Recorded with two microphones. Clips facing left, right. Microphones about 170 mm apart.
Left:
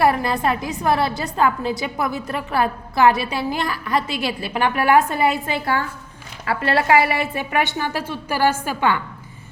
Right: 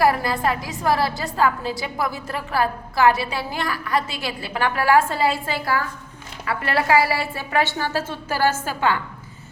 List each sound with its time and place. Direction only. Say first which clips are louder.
0.0 s a woman's voice: left 1 dB; 20° left (ahead or behind)